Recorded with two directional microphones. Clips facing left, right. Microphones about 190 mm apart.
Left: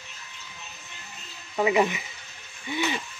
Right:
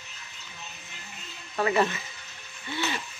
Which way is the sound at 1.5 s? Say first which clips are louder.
Left 2 dB; 15° left (ahead or behind).